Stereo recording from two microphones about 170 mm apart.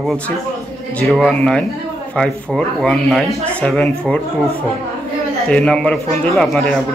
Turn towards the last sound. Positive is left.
turn(degrees=0)  # may be behind; listen again after turning